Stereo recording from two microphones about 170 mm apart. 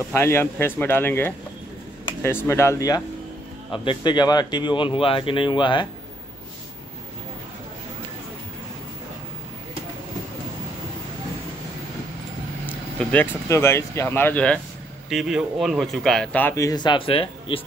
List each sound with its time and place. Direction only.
0.1 s speech: 15° left (ahead or behind)
12.6 s speech: 10° left (ahead or behind)
15.0 s speech: 5° right (ahead or behind); by 17.6 s 35° left (ahead or behind)